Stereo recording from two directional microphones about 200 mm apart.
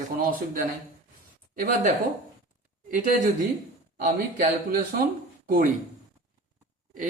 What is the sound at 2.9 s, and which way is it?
Speech, 40° right (ahead or behind).